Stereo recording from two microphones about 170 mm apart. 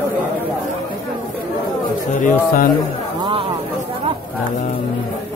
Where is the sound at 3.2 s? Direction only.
30° right (ahead or behind).